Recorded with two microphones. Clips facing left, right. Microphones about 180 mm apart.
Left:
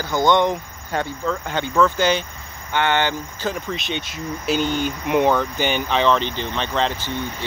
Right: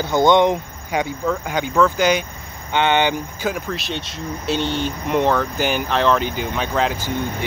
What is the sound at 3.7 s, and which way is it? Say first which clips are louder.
Speech: even; centre (ahead or behind).